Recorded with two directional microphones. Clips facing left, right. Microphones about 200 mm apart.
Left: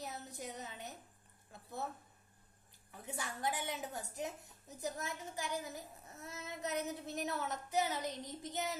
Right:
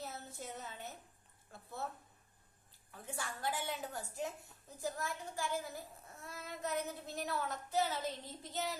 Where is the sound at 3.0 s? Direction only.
20° left (ahead or behind).